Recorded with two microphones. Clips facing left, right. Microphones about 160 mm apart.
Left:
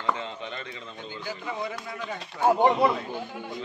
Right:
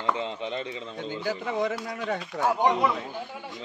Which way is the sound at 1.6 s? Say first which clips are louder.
Right 5 dB; 80° right.